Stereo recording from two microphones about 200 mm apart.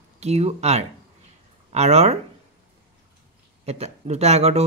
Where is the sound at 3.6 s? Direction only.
30° right (ahead or behind).